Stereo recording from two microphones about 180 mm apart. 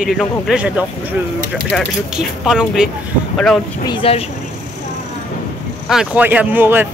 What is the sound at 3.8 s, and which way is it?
Speech, 30° left (ahead or behind).